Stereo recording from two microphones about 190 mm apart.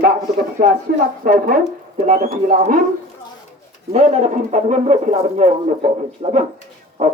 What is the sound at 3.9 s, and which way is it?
Speech, 35° right (ahead or behind).